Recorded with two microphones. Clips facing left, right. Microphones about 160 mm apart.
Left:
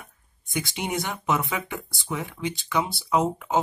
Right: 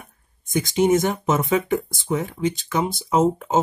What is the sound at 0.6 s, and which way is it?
Speech, 45° right (ahead or behind).